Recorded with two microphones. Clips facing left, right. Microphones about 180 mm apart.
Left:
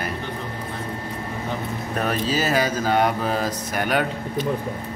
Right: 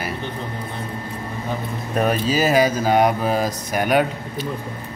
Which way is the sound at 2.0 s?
10° right (ahead or behind).